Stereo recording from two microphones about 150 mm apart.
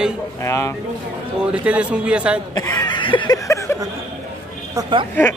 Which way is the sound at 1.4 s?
5° right (ahead or behind).